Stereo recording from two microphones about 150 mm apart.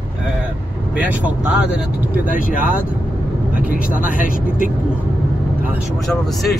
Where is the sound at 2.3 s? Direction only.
65° left (ahead or behind).